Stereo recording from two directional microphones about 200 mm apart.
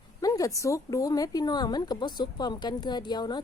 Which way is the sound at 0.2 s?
20° left (ahead or behind).